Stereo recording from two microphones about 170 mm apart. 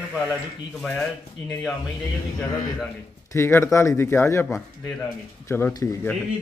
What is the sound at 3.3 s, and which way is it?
Speech, 15° left (ahead or behind).